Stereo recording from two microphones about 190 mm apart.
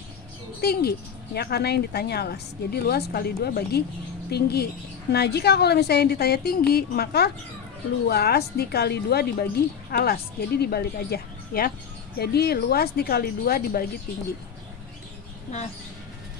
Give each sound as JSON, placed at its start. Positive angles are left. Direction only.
{"t": 0.6, "sound": "a woman's voice", "side_deg": 55}